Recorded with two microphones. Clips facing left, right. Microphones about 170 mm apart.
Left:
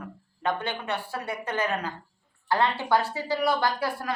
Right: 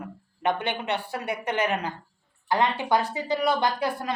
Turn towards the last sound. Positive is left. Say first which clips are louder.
# right 1 dB
turn(degrees=-20)  # may be behind; listen again after turning